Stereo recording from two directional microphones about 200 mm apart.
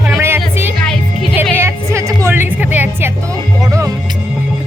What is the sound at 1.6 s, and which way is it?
Music, 15° right (ahead or behind).